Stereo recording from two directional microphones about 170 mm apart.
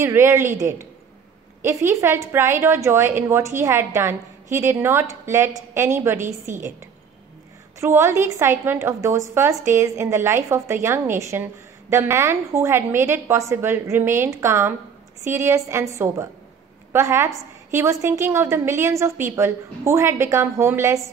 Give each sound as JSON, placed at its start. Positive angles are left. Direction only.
{"t": 0.0, "sound": "a woman's voice", "side_deg": -15}
{"t": 7.8, "sound": "a woman's voice", "side_deg": -15}